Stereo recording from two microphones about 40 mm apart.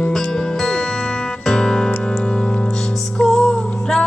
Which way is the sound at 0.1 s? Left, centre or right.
Centre.